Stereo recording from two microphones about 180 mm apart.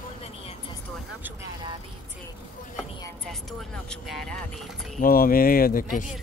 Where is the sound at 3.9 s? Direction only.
Centre (ahead or behind).